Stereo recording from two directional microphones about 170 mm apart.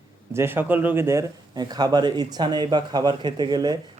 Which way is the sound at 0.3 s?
15° right (ahead or behind).